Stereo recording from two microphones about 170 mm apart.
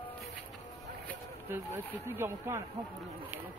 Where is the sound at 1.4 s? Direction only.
10° right (ahead or behind).